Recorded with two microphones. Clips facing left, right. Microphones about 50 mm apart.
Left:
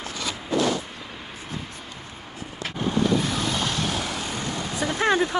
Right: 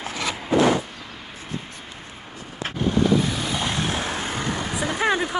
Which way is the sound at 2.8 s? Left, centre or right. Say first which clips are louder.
Right 3 dB; centre.